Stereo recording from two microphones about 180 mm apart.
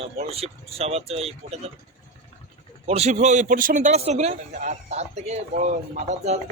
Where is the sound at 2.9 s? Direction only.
35° right (ahead or behind).